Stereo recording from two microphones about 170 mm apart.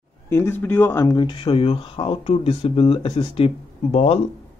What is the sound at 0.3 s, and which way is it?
Speech, 15° left (ahead or behind).